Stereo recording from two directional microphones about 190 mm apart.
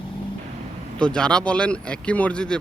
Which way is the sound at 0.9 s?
5° left (ahead or behind).